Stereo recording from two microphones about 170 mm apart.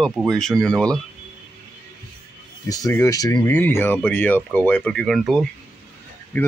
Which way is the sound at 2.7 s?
20° left (ahead or behind).